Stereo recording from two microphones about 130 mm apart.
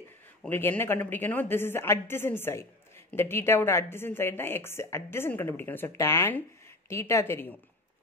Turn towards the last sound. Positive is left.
turn(degrees=15)  # may be behind; listen again after turning